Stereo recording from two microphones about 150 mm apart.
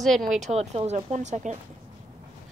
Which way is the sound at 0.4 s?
45° right (ahead or behind).